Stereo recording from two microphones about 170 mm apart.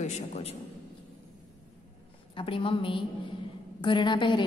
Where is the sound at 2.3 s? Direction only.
30° left (ahead or behind).